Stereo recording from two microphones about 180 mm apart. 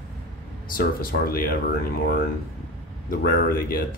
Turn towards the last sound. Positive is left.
turn(degrees=55)  # may be behind; listen again after turning